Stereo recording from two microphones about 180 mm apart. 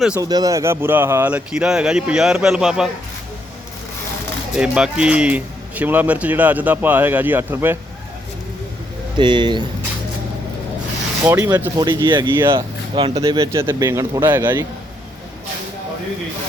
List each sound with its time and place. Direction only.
0.2 s speech: 20° right (ahead or behind); by 2.9 s 5° right (ahead or behind)
4.5 s speech: 5° right (ahead or behind)
9.1 s speech: 25° right (ahead or behind)
11.3 s speech: 20° right (ahead or behind)
13.2 s speech: 20° right (ahead or behind)